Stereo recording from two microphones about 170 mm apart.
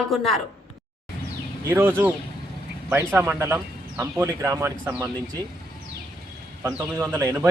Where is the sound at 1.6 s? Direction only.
15° right (ahead or behind).